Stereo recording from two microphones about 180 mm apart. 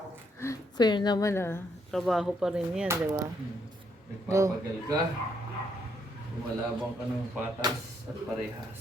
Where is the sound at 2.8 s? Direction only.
15° right (ahead or behind).